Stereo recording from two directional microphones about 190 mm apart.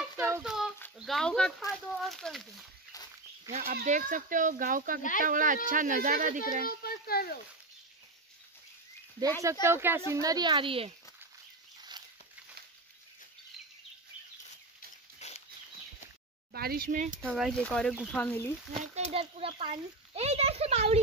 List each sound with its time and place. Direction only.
0.2 s child singing: 5° right (ahead or behind)
0.9 s speech: centre (ahead or behind)
3.5 s speech: 50° right (ahead or behind)
6.8 s speech: 55° left (ahead or behind)
9.4 s a woman's voice: 15° right (ahead or behind)
15.1 s a sound: 35° left (ahead or behind)
16.5 s speech: 50° right (ahead or behind)
17.3 s speech: centre (ahead or behind)
18.9 s speech: 35° right (ahead or behind)